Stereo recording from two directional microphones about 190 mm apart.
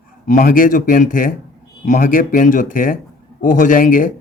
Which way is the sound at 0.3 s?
45° left (ahead or behind).